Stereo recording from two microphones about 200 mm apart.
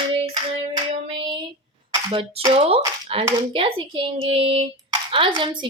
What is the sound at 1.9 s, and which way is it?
A woman's voice, 20° right (ahead or behind).